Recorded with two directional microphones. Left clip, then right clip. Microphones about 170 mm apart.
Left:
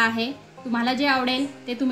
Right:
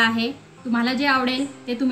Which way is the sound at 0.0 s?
40° right (ahead or behind).